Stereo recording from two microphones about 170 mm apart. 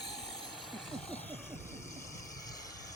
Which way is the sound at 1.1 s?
10° left (ahead or behind).